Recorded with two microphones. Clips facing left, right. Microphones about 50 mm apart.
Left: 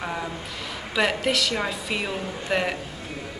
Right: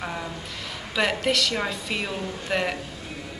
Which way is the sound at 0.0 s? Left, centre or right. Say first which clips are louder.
Left 2 dB; centre.